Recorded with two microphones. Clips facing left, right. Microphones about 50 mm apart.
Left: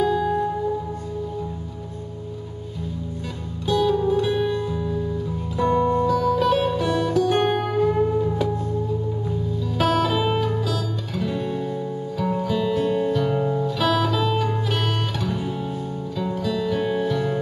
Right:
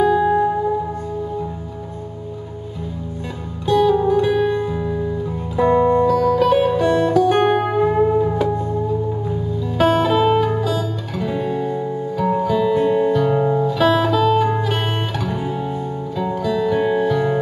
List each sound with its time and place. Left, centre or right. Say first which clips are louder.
0.2 s music: right 6 dB; right
3.7 s music: right 5 dB; centre
7.3 s music: right 5 dB; right
9.3 s music: right 3 dB; centre
10.0 s guitar: right 6 dB; centre
13.8 s music: right 6 dB; centre
14.4 s music: right 5 dB; centre